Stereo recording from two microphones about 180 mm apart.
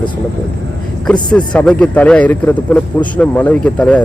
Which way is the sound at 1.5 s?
5° left (ahead or behind).